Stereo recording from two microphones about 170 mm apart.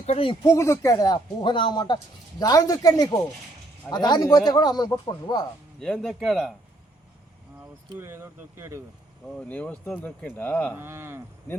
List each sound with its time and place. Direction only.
0.0 s speech: 35° left (ahead or behind)
0.4 s speech: 15° left (ahead or behind)
5.8 s speech: centre (ahead or behind)
7.9 s speech: 15° right (ahead or behind)
9.2 s speech: 5° left (ahead or behind)
10.8 s speech: 15° right (ahead or behind)